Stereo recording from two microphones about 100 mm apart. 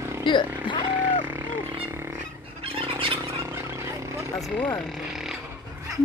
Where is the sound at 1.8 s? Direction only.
25° right (ahead or behind).